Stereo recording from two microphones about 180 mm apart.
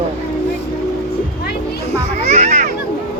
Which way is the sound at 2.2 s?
40° right (ahead or behind).